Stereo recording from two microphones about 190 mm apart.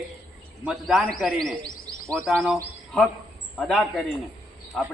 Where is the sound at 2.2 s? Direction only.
Centre (ahead or behind).